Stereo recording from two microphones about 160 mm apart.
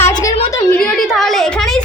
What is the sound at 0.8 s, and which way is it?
Speech, 5° left (ahead or behind).